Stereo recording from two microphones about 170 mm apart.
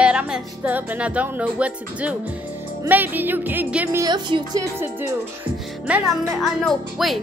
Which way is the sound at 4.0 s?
25° right (ahead or behind).